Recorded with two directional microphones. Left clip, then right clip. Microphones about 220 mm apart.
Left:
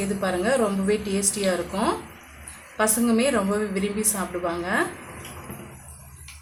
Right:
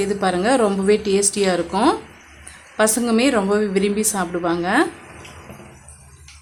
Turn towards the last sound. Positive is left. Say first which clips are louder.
# right 6 dB
turn(degrees=-50)  # may be behind; listen again after turning